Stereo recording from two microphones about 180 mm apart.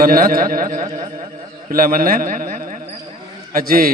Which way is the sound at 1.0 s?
25° right (ahead or behind).